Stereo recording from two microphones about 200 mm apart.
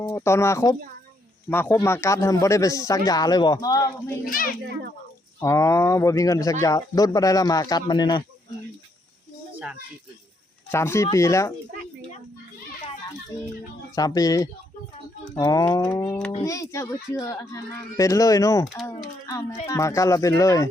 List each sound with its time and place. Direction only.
0.0 s speech: 15° left (ahead or behind)
5.4 s speech: 15° left (ahead or behind)
10.7 s speech: 15° left (ahead or behind)
13.9 s speech: 20° left (ahead or behind)